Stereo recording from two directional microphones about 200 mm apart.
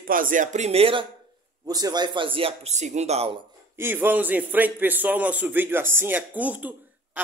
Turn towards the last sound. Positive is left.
turn(degrees=-10)  # may be behind; listen again after turning